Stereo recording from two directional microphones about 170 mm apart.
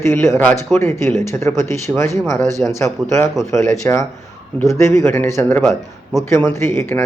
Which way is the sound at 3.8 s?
20° left (ahead or behind).